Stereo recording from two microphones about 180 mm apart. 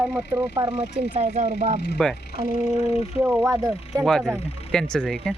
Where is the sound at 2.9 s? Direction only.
5° right (ahead or behind).